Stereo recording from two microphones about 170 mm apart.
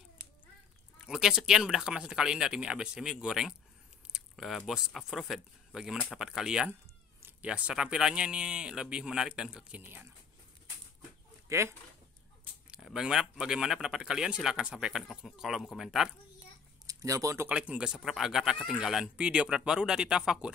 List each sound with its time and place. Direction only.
1.0 s speech: 5° right (ahead or behind)
11.4 s speech: 15° right (ahead or behind)
12.6 s speech: 5° right (ahead or behind)
16.8 s speech: 20° right (ahead or behind)